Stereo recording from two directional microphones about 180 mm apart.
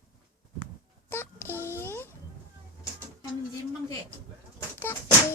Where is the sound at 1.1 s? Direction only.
10° left (ahead or behind).